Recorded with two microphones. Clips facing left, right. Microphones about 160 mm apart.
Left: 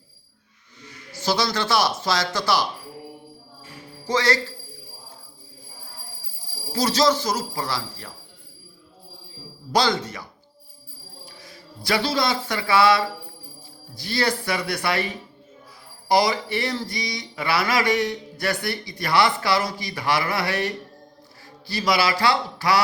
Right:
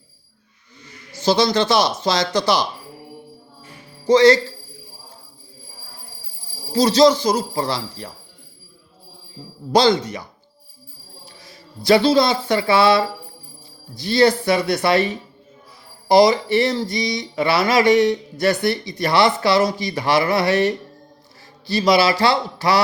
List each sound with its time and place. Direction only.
1.2 s speech: 20° right (ahead or behind)
4.0 s speech: 20° right (ahead or behind)
6.7 s speech: 25° right (ahead or behind)
9.7 s speech: 25° right (ahead or behind)
11.3 s a man's voice: 20° right (ahead or behind)